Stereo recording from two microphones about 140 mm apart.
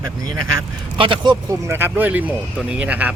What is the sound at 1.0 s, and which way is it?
Speech, 35° right (ahead or behind).